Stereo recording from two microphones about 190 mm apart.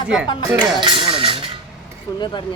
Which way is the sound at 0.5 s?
25° right (ahead or behind).